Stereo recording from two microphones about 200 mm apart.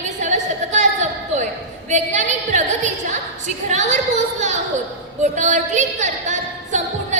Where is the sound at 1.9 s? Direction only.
35° right (ahead or behind).